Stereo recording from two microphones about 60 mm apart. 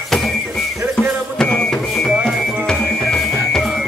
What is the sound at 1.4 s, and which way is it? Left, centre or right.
Music, centre.